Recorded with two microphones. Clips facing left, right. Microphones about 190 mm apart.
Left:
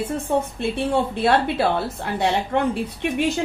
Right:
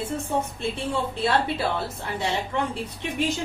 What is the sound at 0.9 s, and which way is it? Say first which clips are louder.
A woman's voice: left 5 dB; 60° left (ahead or behind).